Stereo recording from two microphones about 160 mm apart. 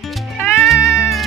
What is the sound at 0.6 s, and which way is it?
Music, centre (ahead or behind).